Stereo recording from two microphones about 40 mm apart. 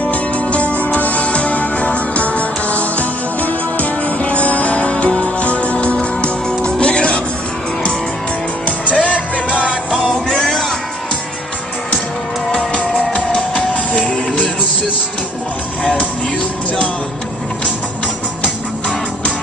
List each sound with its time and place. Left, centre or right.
0.0 s music: left
8.6 s music: left
9.5 s music: right
9.9 s music: centre
12.7 s music: left
15.8 s music: left
18.4 s music: left